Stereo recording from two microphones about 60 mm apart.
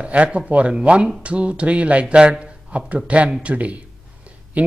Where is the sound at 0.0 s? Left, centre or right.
Right.